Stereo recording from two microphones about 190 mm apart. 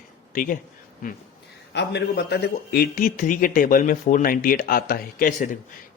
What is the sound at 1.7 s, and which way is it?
Speech, 60° left (ahead or behind).